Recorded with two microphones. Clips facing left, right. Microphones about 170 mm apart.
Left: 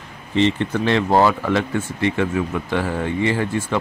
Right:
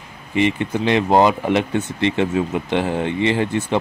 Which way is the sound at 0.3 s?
15° right (ahead or behind).